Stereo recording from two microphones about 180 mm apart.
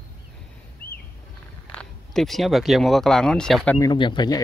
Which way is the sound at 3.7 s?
25° left (ahead or behind).